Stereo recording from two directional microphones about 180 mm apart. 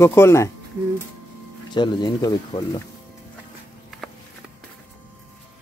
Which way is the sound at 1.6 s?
25° left (ahead or behind).